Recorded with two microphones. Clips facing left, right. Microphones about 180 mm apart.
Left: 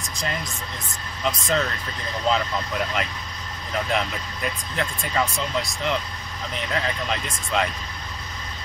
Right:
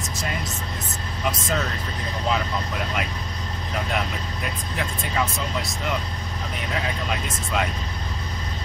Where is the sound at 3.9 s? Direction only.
5° right (ahead or behind).